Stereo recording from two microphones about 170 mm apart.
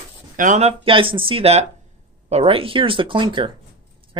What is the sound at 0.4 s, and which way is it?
Speech, 45° right (ahead or behind).